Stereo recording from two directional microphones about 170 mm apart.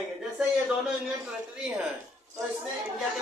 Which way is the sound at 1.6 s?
5° right (ahead or behind).